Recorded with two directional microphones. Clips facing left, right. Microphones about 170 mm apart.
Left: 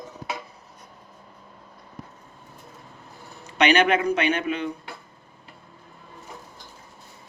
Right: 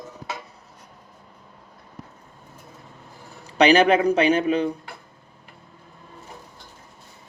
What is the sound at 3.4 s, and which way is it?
A man's voice, 35° right (ahead or behind).